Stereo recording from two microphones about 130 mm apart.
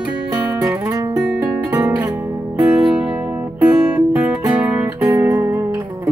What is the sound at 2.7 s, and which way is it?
Music, 5° right (ahead or behind).